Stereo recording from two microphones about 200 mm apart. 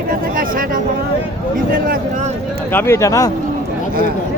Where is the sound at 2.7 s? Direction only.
10° left (ahead or behind).